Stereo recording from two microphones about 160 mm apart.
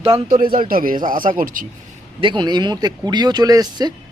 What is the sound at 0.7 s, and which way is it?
Speech, 60° right (ahead or behind).